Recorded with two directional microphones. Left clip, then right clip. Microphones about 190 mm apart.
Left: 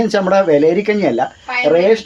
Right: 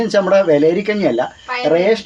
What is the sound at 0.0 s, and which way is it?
Speech, 15° left (ahead or behind).